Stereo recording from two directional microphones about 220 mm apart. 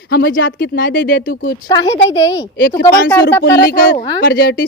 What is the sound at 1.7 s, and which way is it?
Speech, 20° left (ahead or behind).